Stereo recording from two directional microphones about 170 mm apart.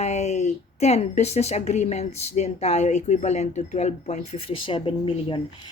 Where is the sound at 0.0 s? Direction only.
40° left (ahead or behind).